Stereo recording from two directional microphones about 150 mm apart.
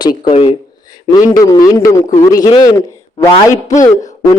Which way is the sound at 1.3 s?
25° left (ahead or behind).